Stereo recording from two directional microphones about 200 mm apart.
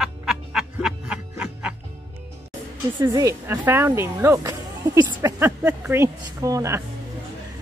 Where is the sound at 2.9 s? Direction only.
15° right (ahead or behind).